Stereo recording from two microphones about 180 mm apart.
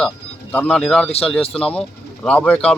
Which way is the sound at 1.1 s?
35° left (ahead or behind).